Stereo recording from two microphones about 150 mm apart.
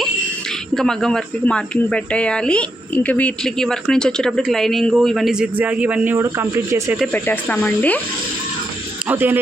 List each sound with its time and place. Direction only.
0.7 s speech: centre (ahead or behind)
6.1 s speech: 20° right (ahead or behind)
7.1 s speech: 15° left (ahead or behind)
9.0 s speech: 15° right (ahead or behind)